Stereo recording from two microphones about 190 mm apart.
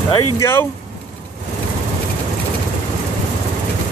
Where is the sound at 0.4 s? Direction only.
10° left (ahead or behind).